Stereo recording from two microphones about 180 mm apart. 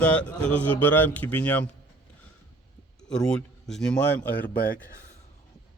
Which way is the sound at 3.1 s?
5° left (ahead or behind).